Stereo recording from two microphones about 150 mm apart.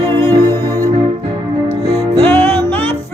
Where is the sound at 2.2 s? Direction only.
15° left (ahead or behind).